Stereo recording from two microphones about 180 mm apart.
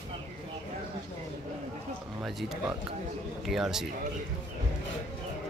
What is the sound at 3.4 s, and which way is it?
Speech, centre (ahead or behind).